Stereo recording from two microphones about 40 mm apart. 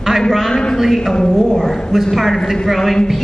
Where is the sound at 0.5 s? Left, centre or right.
Centre.